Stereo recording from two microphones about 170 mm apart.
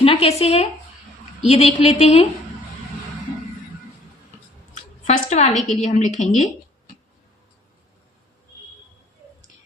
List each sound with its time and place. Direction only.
0.0 s a woman's voice: 35° left (ahead or behind)
5.0 s a woman's voice: 40° left (ahead or behind)